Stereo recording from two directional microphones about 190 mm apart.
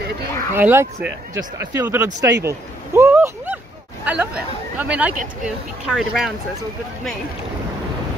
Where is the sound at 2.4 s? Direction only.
15° right (ahead or behind).